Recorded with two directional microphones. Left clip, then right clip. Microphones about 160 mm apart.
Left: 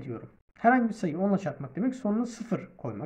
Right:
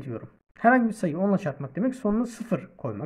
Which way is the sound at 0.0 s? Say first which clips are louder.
Right 3 dB; 40° right (ahead or behind).